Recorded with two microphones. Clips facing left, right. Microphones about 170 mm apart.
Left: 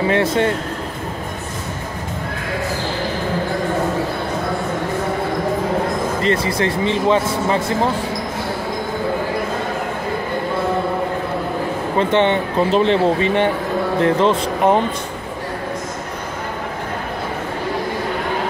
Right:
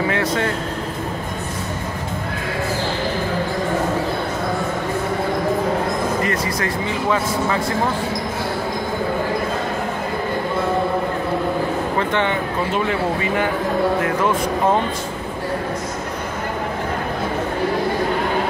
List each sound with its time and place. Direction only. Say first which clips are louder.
0.1 s speech: left 4 dB; 25° left (ahead or behind)
6.2 s speech: left 4 dB; 25° left (ahead or behind)
12.0 s speech: left 8 dB; 20° left (ahead or behind)